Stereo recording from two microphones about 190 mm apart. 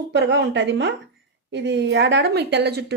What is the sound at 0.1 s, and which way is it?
A woman's voice, 65° right (ahead or behind).